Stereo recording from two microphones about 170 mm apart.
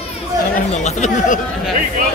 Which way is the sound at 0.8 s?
40° left (ahead or behind).